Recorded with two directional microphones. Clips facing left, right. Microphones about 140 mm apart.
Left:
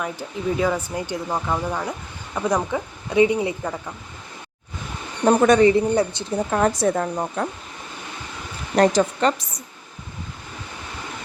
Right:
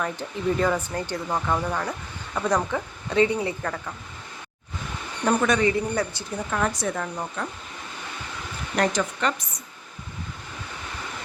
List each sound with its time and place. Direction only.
0.0 s speech: 5° left (ahead or behind)
5.2 s a man's voice: 35° left (ahead or behind)
6.5 s a man's voice: 40° left (ahead or behind)
8.7 s a man's voice: 35° left (ahead or behind)